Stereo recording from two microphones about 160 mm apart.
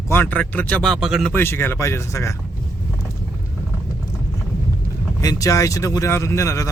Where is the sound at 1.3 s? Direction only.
15° left (ahead or behind).